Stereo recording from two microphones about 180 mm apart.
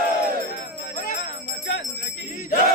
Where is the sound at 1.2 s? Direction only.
85° left.